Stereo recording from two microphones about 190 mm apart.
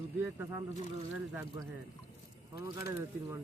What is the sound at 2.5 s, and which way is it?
Speech, 15° right (ahead or behind).